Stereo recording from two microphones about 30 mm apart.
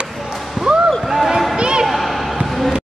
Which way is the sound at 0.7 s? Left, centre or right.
Right.